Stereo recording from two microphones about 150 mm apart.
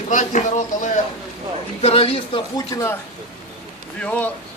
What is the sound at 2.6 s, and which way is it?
Speech, 20° left (ahead or behind).